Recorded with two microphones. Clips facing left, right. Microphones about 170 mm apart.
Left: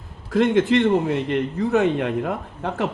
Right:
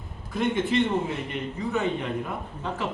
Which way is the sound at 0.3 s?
90° left.